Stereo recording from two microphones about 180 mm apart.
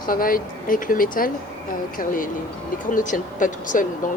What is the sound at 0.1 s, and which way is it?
Speech, 50° left (ahead or behind).